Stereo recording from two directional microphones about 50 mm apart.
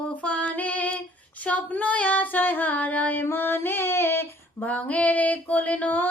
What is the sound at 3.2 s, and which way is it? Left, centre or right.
Music, left.